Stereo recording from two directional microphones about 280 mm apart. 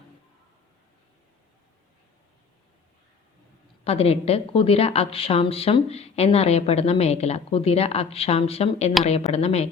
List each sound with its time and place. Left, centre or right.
3.8 s a woman's voice: left